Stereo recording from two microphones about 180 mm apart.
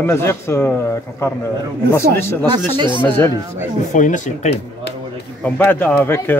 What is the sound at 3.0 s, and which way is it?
Speech, 10° left (ahead or behind).